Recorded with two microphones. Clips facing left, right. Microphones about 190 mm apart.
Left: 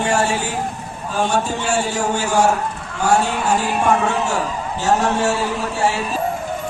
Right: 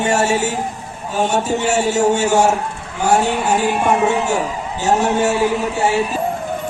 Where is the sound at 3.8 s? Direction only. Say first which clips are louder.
Right 2 dB; 20° right (ahead or behind).